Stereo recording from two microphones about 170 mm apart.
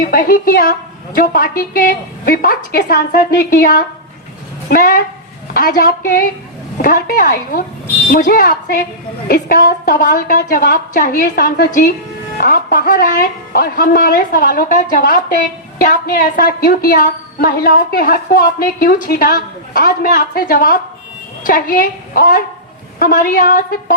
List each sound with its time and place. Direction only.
0.0 s speech: 55° left (ahead or behind)